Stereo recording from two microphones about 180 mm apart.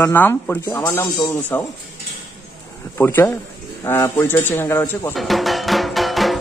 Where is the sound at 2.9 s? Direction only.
10° left (ahead or behind).